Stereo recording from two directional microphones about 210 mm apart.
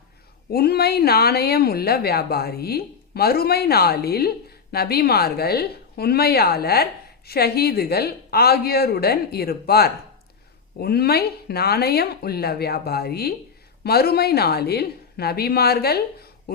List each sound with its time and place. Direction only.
0.5 s a woman's voice: 50° left (ahead or behind)